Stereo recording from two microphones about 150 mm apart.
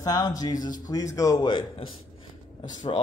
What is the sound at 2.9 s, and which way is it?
Speech, 40° left (ahead or behind).